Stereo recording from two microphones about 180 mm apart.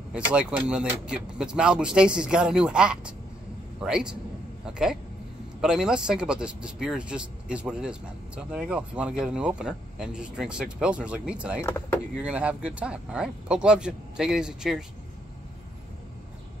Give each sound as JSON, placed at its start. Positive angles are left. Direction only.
{"t": 0.1, "sound": "speech", "side_deg": -5}